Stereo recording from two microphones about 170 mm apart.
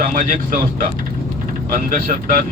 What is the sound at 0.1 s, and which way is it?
Speech, 55° right (ahead or behind).